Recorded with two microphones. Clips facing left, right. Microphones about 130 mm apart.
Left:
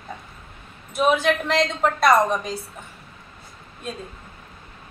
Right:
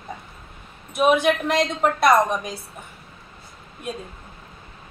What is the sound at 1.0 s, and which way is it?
Speech, 15° right (ahead or behind).